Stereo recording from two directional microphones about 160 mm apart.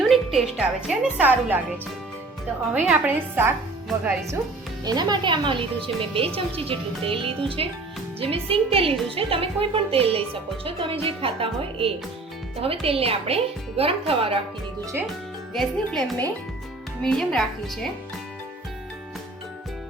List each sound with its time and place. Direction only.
0.0 s a woman's voice: centre (ahead or behind)
2.7 s a woman's voice: 10° right (ahead or behind)
4.9 s a woman's voice: 25° right (ahead or behind)
15.5 s a woman's voice: centre (ahead or behind)